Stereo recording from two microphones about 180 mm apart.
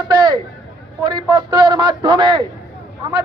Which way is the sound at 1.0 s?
25° right (ahead or behind).